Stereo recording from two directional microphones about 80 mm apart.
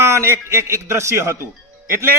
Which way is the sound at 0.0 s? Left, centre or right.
Right.